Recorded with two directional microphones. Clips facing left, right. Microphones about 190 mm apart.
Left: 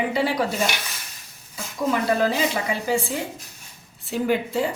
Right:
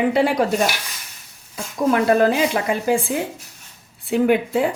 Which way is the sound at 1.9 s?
55° right (ahead or behind).